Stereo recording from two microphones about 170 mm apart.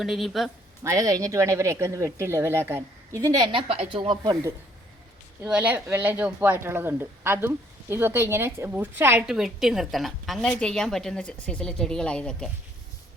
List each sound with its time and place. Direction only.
0.0 s speech: centre (ahead or behind)
0.9 s speech: 20° right (ahead or behind)
5.4 s speech: 5° right (ahead or behind)